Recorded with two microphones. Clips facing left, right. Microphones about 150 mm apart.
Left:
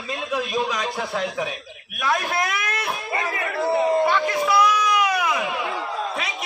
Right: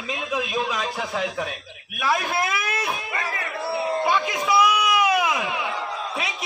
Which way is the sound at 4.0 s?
15° right (ahead or behind).